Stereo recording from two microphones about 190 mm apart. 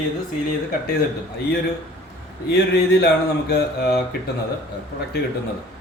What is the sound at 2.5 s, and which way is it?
A man's voice, 60° left (ahead or behind).